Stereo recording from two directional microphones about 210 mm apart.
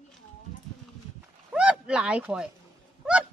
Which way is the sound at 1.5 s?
5° right (ahead or behind).